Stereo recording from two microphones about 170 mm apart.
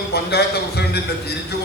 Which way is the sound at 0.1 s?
70° left (ahead or behind).